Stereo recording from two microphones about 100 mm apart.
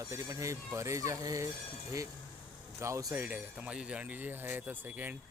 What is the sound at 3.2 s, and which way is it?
A man's voice, 15° right (ahead or behind).